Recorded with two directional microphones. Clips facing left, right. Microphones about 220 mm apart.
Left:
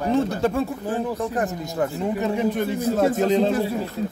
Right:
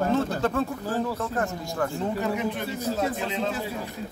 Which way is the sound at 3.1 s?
40° left (ahead or behind).